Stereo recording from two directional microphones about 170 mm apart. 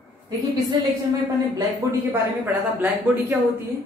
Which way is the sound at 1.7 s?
10° right (ahead or behind).